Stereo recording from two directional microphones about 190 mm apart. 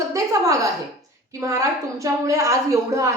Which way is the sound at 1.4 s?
15° right (ahead or behind).